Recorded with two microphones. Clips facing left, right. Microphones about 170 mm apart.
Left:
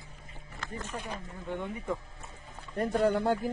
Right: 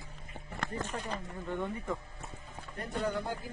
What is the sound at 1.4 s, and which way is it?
Speech, centre (ahead or behind).